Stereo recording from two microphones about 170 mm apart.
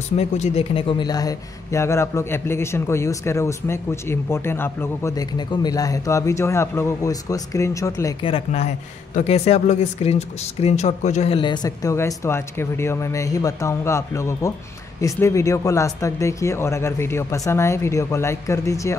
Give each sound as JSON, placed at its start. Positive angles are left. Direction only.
{"t": 0.2, "sound": "a man's voice", "side_deg": 35}
{"t": 8.2, "sound": "a man's voice", "side_deg": 30}